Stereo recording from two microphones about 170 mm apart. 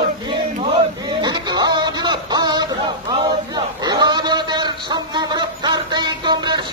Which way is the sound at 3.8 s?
25° right (ahead or behind).